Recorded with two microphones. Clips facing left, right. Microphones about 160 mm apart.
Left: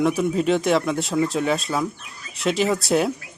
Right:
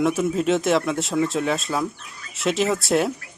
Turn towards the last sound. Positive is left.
turn(degrees=0)  # may be behind; listen again after turning